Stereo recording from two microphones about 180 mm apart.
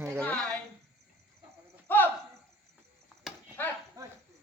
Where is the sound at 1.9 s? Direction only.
10° left (ahead or behind).